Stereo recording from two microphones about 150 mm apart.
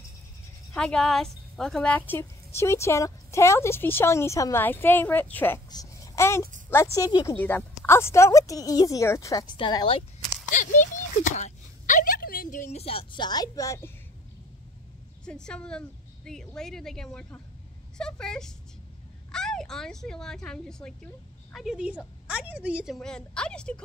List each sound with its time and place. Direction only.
0.7 s a woman's voice: 5° left (ahead or behind)
5.7 s a sound: 20° left (ahead or behind)
6.7 s a woman's voice: 20° left (ahead or behind)
7.3 s a woman's voice: 10° left (ahead or behind); by 10.0 s 35° left (ahead or behind)
10.5 s a child's voice: 60° left (ahead or behind); by 13.9 s 20° left (ahead or behind)
15.2 s a woman's voice: 5° left (ahead or behind)
22.9 s a woman's voice: 5° left (ahead or behind)